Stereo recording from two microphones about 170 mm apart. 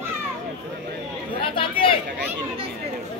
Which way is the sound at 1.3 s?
30° left (ahead or behind).